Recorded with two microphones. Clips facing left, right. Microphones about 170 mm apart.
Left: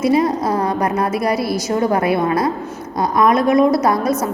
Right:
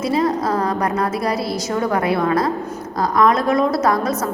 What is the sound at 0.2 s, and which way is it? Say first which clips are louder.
A woman's voice: left 1 dB; 20° left (ahead or behind).